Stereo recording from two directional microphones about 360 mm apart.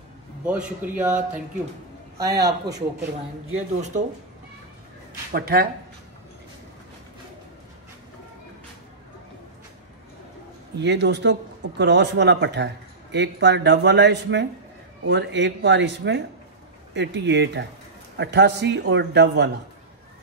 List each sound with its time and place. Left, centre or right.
0.5 s speech: centre
2.1 s speech: centre
10.8 s speech: right